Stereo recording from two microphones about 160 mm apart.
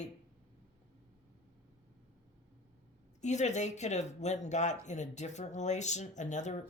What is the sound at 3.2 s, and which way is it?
Speech, 45° left (ahead or behind).